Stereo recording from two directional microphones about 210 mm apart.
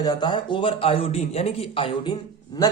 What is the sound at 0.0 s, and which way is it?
Speech, 20° left (ahead or behind).